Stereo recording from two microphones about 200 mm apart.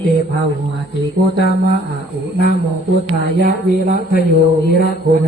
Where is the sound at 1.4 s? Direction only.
50° left (ahead or behind).